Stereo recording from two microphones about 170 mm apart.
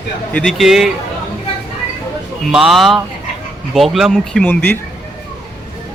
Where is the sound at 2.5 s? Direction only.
Centre (ahead or behind).